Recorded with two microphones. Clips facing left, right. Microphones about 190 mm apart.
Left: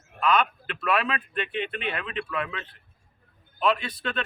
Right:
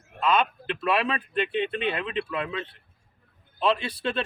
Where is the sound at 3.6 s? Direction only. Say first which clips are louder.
Even; 30° right (ahead or behind).